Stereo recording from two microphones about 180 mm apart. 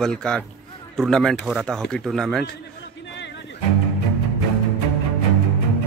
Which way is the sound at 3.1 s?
80° left.